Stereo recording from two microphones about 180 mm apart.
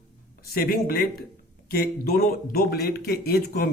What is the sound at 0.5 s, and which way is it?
Speech, 55° left (ahead or behind).